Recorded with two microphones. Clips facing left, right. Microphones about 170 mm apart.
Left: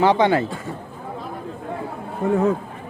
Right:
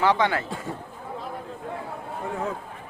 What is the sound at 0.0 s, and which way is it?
Speech, 20° left (ahead or behind).